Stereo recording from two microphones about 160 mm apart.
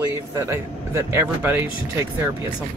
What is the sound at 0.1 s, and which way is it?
Speech, 15° right (ahead or behind).